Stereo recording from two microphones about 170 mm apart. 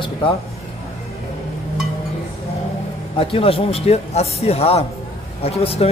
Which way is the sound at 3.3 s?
35° left (ahead or behind).